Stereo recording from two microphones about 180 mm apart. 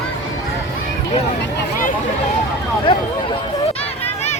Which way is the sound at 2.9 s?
25° left (ahead or behind).